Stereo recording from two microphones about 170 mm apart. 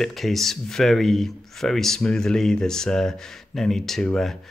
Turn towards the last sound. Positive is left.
turn(degrees=0)  # may be behind; listen again after turning